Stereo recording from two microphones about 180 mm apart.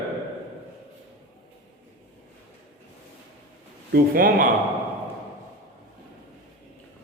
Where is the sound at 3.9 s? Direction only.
50° right (ahead or behind).